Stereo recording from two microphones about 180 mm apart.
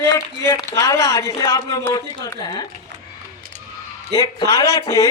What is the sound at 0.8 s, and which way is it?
Speech, 75° right (ahead or behind).